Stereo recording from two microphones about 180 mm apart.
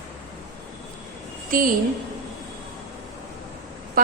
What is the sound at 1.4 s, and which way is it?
Speech, 50° right (ahead or behind).